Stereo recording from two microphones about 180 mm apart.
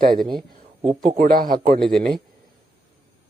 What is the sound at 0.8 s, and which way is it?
Speech, 30° right (ahead or behind).